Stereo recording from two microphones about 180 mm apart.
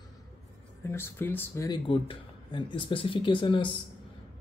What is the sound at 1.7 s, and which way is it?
Speech, 30° left (ahead or behind).